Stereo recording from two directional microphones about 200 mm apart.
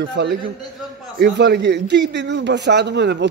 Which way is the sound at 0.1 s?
60° right (ahead or behind).